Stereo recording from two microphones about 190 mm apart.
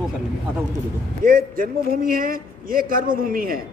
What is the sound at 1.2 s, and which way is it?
A woman's voice, 50° right (ahead or behind).